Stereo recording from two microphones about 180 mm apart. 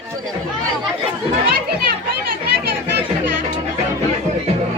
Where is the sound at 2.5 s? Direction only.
60° right (ahead or behind).